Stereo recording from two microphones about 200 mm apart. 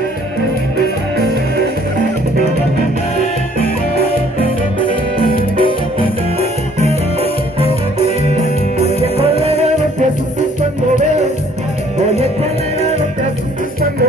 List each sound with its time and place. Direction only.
5.2 s music: 25° left (ahead or behind)
9.4 s music: 30° right (ahead or behind)